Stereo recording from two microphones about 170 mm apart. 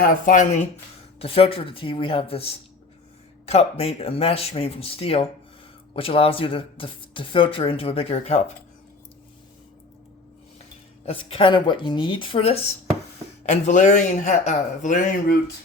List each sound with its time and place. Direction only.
0.0 s a man's voice: 50° left (ahead or behind)
1.2 s speech: 35° left (ahead or behind)
11.0 s a man's voice: 35° left (ahead or behind); by 15.4 s 50° left (ahead or behind)